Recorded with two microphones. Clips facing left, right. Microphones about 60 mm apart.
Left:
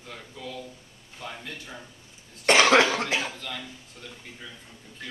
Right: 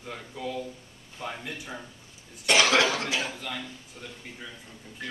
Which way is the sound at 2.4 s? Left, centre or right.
Left.